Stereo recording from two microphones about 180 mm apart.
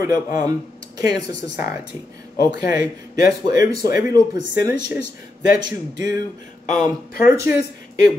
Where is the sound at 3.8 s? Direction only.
60° left (ahead or behind).